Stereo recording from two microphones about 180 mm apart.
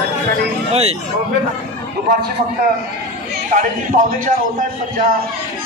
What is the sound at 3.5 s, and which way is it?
Speech, 45° right (ahead or behind).